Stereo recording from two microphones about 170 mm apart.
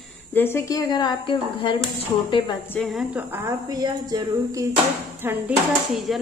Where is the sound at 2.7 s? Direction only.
Centre (ahead or behind); by 4.6 s 20° right (ahead or behind).